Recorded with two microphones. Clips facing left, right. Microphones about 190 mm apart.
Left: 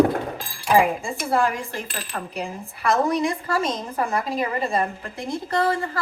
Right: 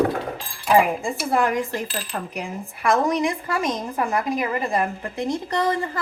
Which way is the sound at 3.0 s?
15° right (ahead or behind).